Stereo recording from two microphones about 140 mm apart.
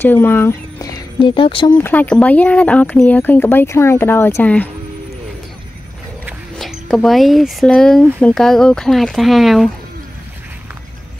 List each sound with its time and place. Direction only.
0.0 s speech: 15° left (ahead or behind)
1.2 s speech: 40° left (ahead or behind)
1.8 s speech: 15° left (ahead or behind)
6.5 s speech: 5° left (ahead or behind)